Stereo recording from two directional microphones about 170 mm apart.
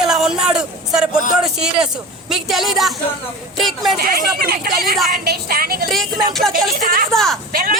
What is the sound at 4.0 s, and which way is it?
Speech, 65° right (ahead or behind).